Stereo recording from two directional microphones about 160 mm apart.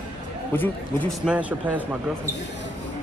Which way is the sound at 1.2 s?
10° right (ahead or behind).